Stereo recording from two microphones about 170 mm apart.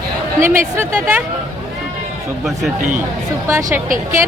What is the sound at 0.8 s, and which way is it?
Speech, 10° right (ahead or behind).